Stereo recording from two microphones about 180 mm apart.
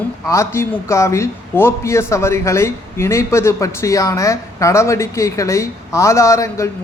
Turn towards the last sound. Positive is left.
turn(degrees=15)  # may be behind; listen again after turning